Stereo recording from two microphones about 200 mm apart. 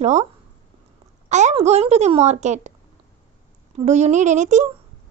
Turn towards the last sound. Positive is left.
turn(degrees=-35)  # may be behind; listen again after turning